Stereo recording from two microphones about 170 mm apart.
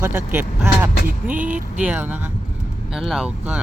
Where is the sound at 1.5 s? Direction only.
50° right (ahead or behind).